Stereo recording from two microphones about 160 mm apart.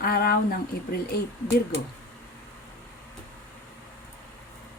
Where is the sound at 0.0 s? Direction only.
70° left (ahead or behind).